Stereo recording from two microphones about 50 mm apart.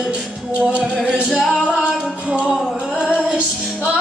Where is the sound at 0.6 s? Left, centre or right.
Right.